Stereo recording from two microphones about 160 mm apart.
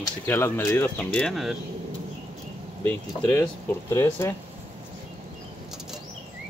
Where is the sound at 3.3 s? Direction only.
20° left (ahead or behind).